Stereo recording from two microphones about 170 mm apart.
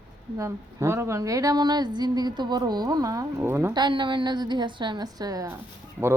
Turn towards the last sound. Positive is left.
turn(degrees=-15)  # may be behind; listen again after turning